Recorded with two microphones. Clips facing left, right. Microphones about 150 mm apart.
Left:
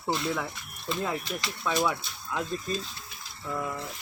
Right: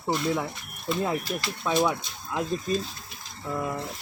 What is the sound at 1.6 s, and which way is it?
Speech, 20° right (ahead or behind).